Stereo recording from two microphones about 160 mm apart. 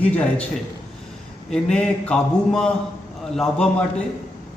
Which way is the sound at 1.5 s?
5° left (ahead or behind).